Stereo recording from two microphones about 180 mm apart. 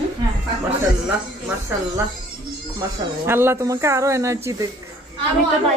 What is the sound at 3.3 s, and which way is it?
Speech, 15° right (ahead or behind).